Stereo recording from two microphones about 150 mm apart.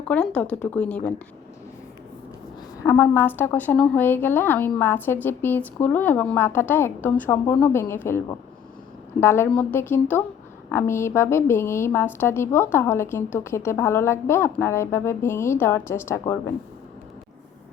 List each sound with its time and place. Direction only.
0.0 s a woman's voice: 10° left (ahead or behind)
2.8 s a woman's voice: 20° left (ahead or behind)